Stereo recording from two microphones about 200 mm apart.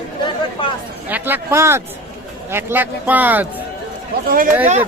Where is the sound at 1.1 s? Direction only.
10° right (ahead or behind).